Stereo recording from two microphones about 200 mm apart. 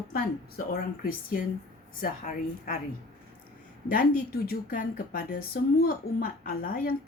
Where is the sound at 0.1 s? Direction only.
45° left (ahead or behind).